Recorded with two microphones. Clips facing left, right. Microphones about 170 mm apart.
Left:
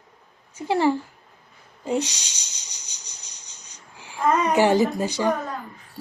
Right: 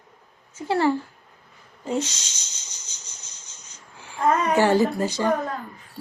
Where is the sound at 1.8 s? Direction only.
15° left (ahead or behind).